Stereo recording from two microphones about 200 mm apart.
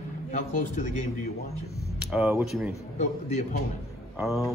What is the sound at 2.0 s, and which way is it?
Speech, 10° right (ahead or behind).